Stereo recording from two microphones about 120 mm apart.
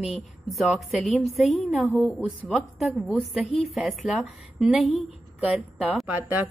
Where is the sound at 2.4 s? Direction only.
Centre (ahead or behind).